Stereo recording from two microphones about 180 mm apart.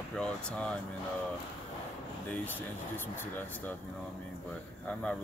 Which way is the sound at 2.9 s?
10° left (ahead or behind).